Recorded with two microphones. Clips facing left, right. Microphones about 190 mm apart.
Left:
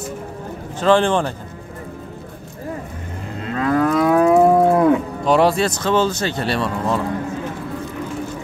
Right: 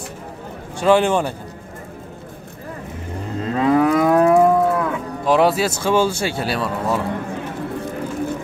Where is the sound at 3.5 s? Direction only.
15° right (ahead or behind).